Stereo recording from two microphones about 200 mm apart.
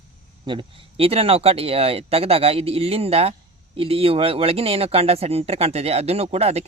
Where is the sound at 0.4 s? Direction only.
25° right (ahead or behind).